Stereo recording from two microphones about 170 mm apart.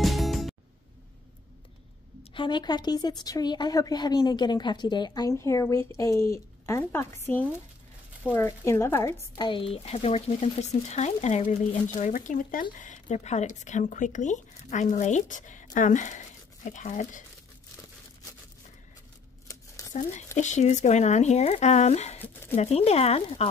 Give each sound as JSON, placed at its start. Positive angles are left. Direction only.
{"t": 0.0, "sound": "music", "side_deg": 0}
{"t": 2.3, "sound": "a woman's voice", "side_deg": 30}
{"t": 9.4, "sound": "speech", "side_deg": 30}
{"t": 12.1, "sound": "speech", "side_deg": 50}
{"t": 19.4, "sound": "a sound", "side_deg": 20}
{"t": 19.9, "sound": "speech", "side_deg": 45}
{"t": 22.2, "sound": "speech", "side_deg": 10}
{"t": 22.6, "sound": "speech", "side_deg": 40}